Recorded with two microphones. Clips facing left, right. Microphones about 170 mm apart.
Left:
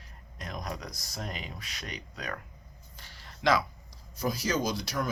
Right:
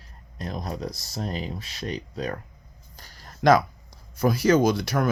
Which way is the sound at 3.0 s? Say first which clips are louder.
Right 10 dB; 40° right (ahead or behind).